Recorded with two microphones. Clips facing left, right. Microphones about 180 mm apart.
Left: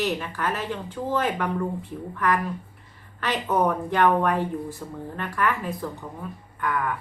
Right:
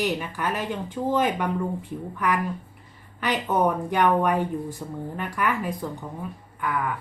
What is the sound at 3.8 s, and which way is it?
Speech, 15° right (ahead or behind).